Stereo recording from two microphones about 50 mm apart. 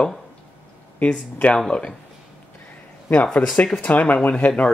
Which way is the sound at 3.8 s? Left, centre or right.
Left.